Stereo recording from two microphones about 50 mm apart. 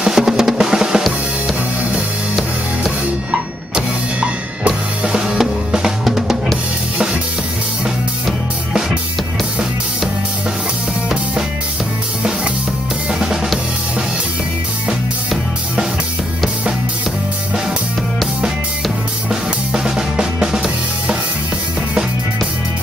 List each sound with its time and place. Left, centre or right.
0.0 s drum: centre
4.2 s drum kit: right
19.7 s drum kit: centre